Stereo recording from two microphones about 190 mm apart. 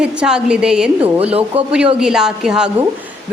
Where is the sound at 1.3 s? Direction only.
30° right (ahead or behind).